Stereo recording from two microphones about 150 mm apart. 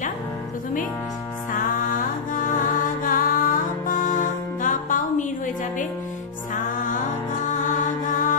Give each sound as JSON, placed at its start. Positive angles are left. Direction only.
{"t": 1.5, "sound": "music", "side_deg": 65}
{"t": 6.5, "sound": "music", "side_deg": 60}
{"t": 8.1, "sound": "mantra", "side_deg": 60}